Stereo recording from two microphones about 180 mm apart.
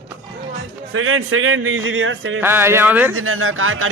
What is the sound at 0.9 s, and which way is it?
Speech, 90° right.